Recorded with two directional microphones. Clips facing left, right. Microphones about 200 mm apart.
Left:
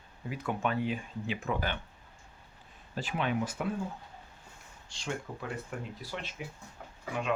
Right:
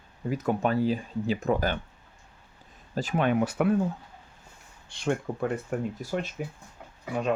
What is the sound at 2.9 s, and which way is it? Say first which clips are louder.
Speech: right 7 dB; 45° right (ahead or behind).